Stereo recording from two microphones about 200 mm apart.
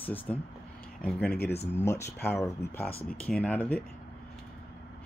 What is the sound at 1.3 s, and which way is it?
Speech, 55° left (ahead or behind).